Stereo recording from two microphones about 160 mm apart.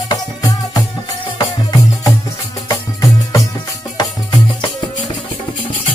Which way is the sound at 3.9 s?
30° left (ahead or behind).